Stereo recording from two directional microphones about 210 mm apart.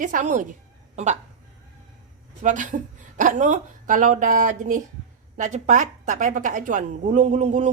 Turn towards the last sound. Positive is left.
turn(degrees=-35)  # may be behind; listen again after turning